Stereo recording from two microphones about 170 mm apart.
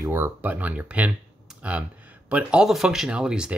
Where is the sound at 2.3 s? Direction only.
5° right (ahead or behind).